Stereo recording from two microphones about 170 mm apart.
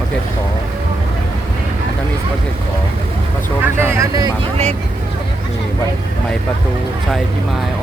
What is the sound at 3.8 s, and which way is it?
Speech, 15° right (ahead or behind).